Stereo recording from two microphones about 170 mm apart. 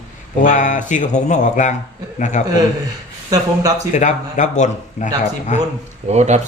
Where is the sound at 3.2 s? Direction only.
20° right (ahead or behind).